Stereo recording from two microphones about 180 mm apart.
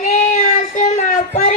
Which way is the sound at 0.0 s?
45° left (ahead or behind).